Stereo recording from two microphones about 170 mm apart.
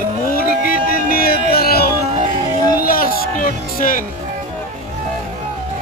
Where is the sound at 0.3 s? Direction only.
55° left (ahead or behind).